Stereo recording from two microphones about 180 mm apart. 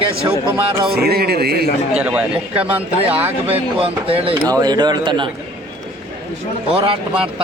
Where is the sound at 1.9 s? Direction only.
5° right (ahead or behind).